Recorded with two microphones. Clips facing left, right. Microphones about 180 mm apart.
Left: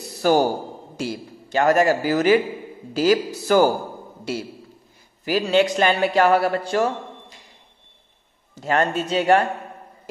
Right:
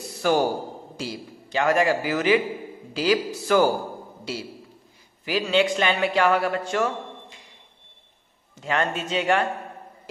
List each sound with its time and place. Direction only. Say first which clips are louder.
0.2 s a man's voice: left 3 dB; 40° left (ahead or behind)
4.2 s a man's voice: left 6 dB; 50° left (ahead or behind); by 7.3 s 35° left (ahead or behind)
8.5 s a man's voice: left 4 dB; 40° left (ahead or behind)